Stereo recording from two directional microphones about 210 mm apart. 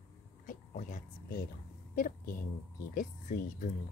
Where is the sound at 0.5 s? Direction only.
40° left (ahead or behind).